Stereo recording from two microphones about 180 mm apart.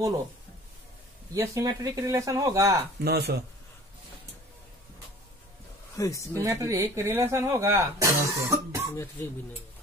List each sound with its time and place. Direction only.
1.3 s speech: 15° right (ahead or behind)
3.0 s speech: 60° right (ahead or behind)
5.9 s a woman's voice: 15° left (ahead or behind)
6.4 s speech: 15° right (ahead or behind)
8.9 s a woman's voice: 15° left (ahead or behind)